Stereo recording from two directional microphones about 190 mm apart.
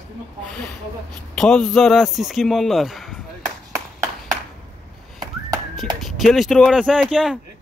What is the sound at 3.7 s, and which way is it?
Clapping, 15° right (ahead or behind).